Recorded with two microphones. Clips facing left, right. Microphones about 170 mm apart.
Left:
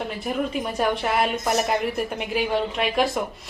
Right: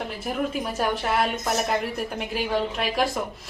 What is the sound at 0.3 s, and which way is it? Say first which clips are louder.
A woman's voice: left 1 dB; centre (ahead or behind).